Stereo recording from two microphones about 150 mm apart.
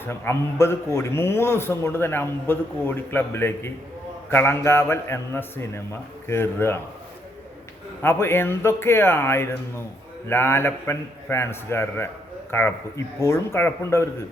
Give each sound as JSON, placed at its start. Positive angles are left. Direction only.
{"t": 0.0, "sound": "a man's voice", "side_deg": 15}
{"t": 8.0, "sound": "a man's voice", "side_deg": 15}